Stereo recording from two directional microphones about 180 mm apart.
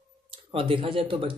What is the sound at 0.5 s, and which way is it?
Speech, 30° right (ahead or behind).